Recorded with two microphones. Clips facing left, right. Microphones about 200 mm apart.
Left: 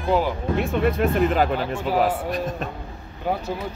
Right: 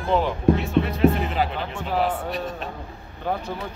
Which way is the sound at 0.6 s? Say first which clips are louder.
Right 2 dB; 50° left (ahead or behind).